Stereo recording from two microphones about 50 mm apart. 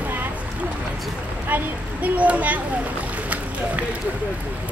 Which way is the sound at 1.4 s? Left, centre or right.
Right.